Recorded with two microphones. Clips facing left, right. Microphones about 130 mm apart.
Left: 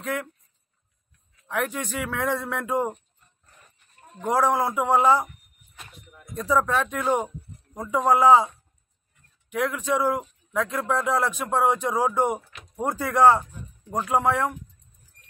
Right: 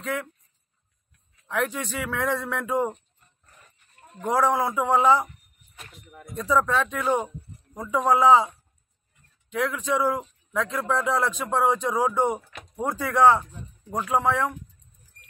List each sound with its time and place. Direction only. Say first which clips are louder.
1.5 s a man's voice: even; 5° left (ahead or behind)
4.2 s a man's voice: even; 15° left (ahead or behind)
6.5 s a man's voice: even; 10° left (ahead or behind)
9.5 s a man's voice: left 1 dB; 15° left (ahead or behind)